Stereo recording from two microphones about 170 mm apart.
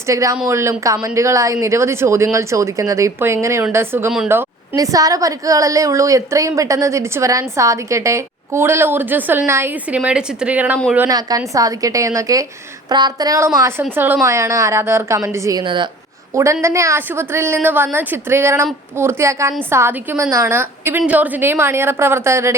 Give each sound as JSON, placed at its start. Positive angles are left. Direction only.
{"t": 0.1, "sound": "a woman's voice", "side_deg": -20}
{"t": 11.1, "sound": "a woman's voice", "side_deg": -20}
{"t": 16.3, "sound": "a woman's voice", "side_deg": -15}